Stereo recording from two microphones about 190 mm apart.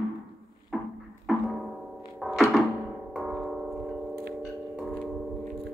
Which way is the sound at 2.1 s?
Centre (ahead or behind).